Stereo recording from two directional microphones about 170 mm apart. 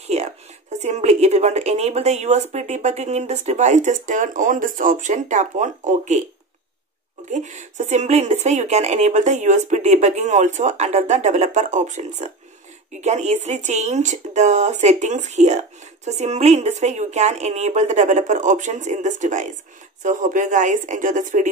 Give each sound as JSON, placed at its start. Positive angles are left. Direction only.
{"t": 0.1, "sound": "speech", "side_deg": -40}
{"t": 7.2, "sound": "speech", "side_deg": -45}